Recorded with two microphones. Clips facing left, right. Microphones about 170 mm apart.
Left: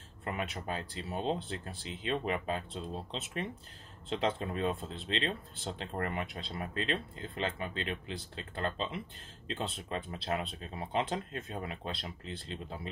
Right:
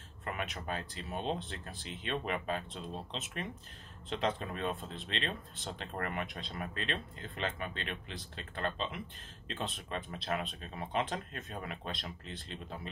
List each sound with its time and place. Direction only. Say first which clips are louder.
0.2 s speech: left 2 dB; 30° left (ahead or behind)